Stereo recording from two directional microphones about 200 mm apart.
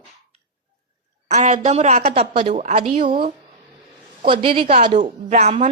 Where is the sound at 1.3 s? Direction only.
35° right (ahead or behind).